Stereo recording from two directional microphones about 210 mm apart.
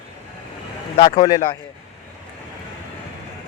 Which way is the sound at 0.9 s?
35° left (ahead or behind).